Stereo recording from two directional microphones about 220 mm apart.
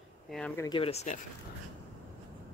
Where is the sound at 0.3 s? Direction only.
5° left (ahead or behind).